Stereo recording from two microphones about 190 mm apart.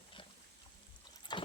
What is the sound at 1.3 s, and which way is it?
Clip-clop, 25° left (ahead or behind).